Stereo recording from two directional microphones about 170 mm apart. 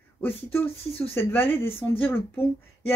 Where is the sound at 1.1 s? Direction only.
15° left (ahead or behind).